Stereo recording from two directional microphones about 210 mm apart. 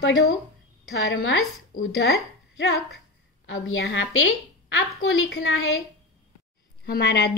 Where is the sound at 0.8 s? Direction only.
65° left (ahead or behind).